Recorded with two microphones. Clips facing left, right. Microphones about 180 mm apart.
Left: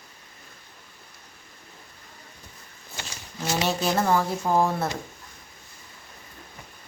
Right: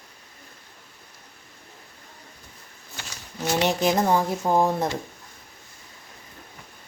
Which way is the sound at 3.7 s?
15° right (ahead or behind).